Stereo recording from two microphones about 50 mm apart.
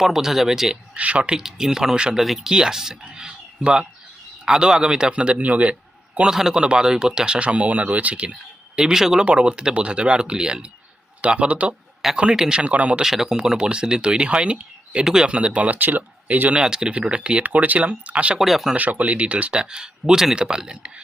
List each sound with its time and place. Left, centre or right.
0.0 s speech: centre
0.9 s speech: right
6.1 s speech: centre
9.2 s speech: right
12.6 s speech: right
13.0 s speech: centre; by 16.6 s right
16.6 s speech: centre
17.4 s speech: right
18.3 s speech: centre
18.8 s speech: right